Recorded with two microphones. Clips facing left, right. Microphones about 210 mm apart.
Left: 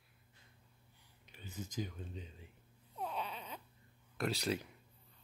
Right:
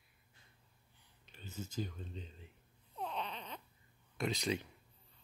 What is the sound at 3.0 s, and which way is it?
Baby cry, 5° left (ahead or behind).